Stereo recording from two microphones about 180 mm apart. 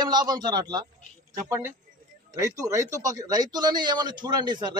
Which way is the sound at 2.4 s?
15° right (ahead or behind).